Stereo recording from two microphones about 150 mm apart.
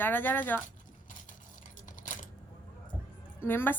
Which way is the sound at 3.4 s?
15° left (ahead or behind).